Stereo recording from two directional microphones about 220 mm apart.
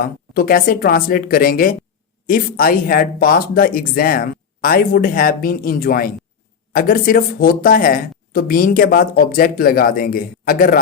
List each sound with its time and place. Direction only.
0.0 s speech: 40° left (ahead or behind)